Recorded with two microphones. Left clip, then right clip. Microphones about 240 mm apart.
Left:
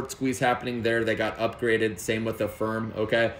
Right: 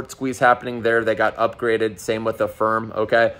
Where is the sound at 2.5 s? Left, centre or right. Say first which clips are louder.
Right 9 dB; right.